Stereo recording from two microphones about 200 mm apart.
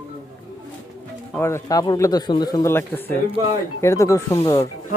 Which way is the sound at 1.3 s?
15° left (ahead or behind).